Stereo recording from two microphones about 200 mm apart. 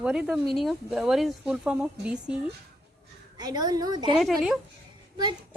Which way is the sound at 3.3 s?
20° right (ahead or behind).